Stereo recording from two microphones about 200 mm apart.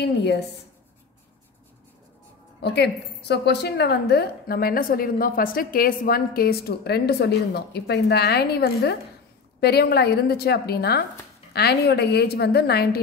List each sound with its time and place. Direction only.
0.0 s a woman's voice: 55° left (ahead or behind)
2.6 s a woman's voice: 55° left (ahead or behind)